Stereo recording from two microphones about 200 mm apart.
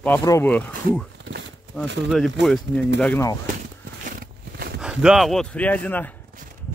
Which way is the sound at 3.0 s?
10° left (ahead or behind).